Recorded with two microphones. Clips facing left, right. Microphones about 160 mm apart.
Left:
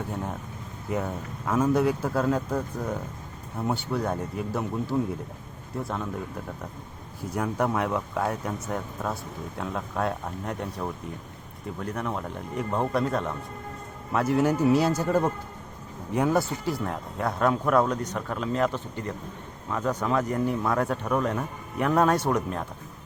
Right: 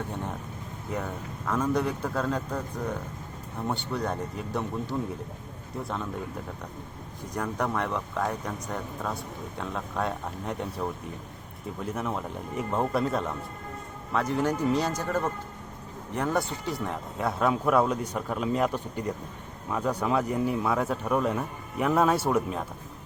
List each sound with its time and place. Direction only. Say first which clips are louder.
0.9 s speech: left 4 dB; 5° left (ahead or behind)
7.3 s speech: left 3 dB; 10° left (ahead or behind)
11.8 s speech: even; 5° right (ahead or behind)